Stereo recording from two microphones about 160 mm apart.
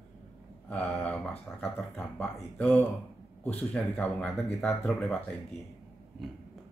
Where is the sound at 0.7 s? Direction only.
5° left (ahead or behind).